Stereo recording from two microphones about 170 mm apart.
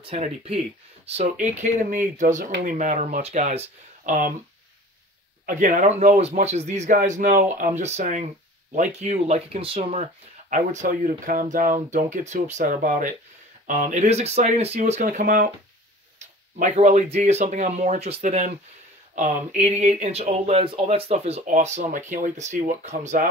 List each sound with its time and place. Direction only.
0.0 s speech: 35° right (ahead or behind)
5.5 s speech: 50° right (ahead or behind)
10.5 s speech: 45° right (ahead or behind)
14.8 s speech: 50° right (ahead or behind)
16.5 s speech: 45° right (ahead or behind)